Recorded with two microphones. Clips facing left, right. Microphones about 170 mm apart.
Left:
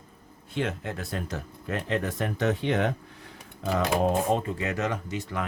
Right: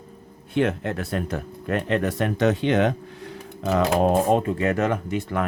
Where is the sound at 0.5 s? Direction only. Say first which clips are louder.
Right 8 dB; 65° right (ahead or behind); by 2.9 s 90° right.